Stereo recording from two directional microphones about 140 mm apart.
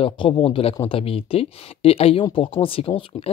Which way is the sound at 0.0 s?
35° left (ahead or behind).